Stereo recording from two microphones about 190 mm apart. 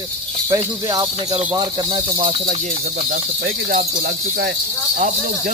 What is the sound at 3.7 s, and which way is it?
Speech, 55° right (ahead or behind).